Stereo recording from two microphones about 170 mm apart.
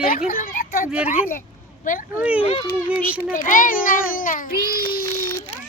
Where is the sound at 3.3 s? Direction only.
50° left (ahead or behind).